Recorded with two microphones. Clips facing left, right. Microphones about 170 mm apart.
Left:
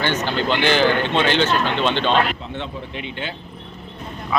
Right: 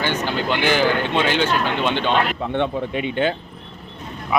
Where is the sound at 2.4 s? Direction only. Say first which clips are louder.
Right 9 dB; 60° right (ahead or behind).